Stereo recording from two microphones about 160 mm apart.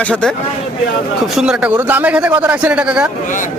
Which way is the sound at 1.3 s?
5° right (ahead or behind).